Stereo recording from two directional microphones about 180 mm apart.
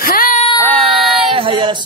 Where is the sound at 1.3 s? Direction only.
30° right (ahead or behind).